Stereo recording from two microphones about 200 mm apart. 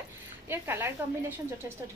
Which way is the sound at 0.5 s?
10° right (ahead or behind).